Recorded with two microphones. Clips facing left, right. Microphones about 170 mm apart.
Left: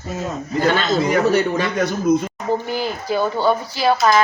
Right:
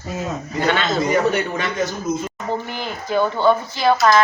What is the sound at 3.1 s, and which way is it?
Speech, 10° left (ahead or behind).